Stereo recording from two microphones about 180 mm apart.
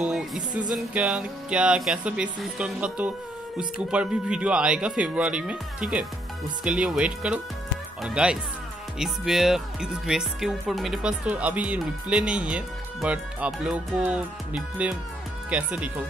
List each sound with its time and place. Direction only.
0.0 s speech: 5° right (ahead or behind)